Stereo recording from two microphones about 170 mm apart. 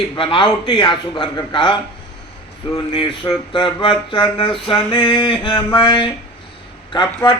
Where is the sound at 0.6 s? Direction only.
30° left (ahead or behind).